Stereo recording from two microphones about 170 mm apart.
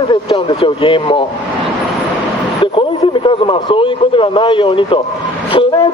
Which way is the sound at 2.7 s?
30° left (ahead or behind).